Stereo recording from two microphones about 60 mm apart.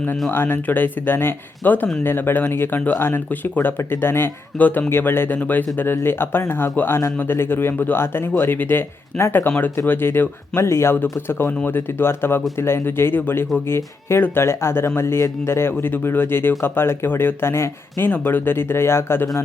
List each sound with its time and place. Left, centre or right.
0.3 s speech: left
4.5 s speech: left
4.9 s speech: left